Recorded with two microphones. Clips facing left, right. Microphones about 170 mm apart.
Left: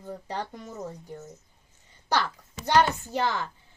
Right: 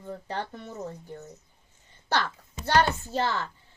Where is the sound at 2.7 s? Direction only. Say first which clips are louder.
Left 1 dB; 15° left (ahead or behind).